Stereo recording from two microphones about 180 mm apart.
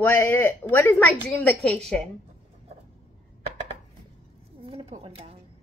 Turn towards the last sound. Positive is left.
turn(degrees=-35)  # may be behind; listen again after turning